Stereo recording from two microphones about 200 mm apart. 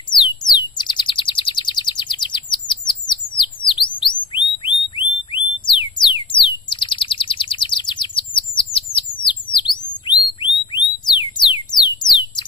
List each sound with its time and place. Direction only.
0.1 s bird: 20° left (ahead or behind)
3.3 s a sound: 25° left (ahead or behind)
6.0 s bird: 25° left (ahead or behind)
9.2 s chirp tone: 25° left (ahead or behind)